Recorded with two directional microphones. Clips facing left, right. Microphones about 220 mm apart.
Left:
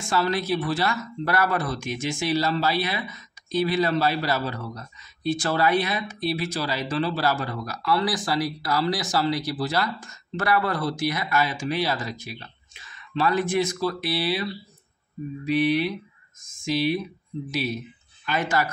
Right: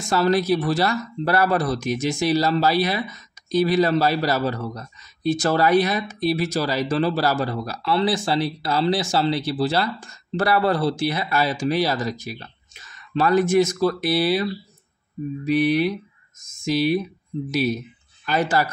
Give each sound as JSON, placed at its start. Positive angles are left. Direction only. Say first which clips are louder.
{"t": 0.0, "sound": "speech", "louder": "right 5 dB", "side_deg": -40}
{"t": 18.2, "sound": "speech", "louder": "right 4 dB", "side_deg": -35}